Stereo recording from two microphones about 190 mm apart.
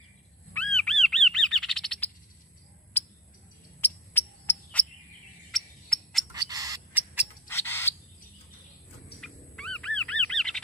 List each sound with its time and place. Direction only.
0.5 s bird: 5° left (ahead or behind)
3.8 s cricket: 10° left (ahead or behind)
5.5 s owl: centre (ahead or behind)
6.3 s a sound: 20° right (ahead or behind)
7.4 s a sound: 10° left (ahead or behind)
9.2 s bird: 5° left (ahead or behind)